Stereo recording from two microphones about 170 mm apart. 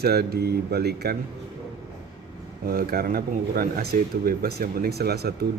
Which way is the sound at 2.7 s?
60° right (ahead or behind).